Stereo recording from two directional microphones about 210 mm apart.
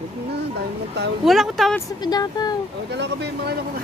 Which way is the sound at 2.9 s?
55° right (ahead or behind).